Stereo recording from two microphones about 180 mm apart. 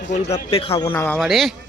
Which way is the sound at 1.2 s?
Centre (ahead or behind).